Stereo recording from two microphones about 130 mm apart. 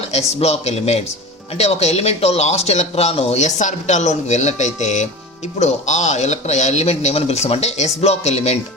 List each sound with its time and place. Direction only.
0.1 s speech: 55° left (ahead or behind)